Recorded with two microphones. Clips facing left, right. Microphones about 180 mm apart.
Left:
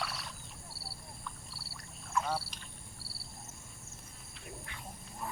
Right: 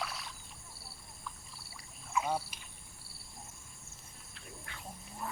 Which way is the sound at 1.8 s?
5° right (ahead or behind).